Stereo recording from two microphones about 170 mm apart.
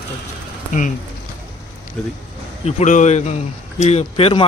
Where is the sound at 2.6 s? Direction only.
45° left (ahead or behind).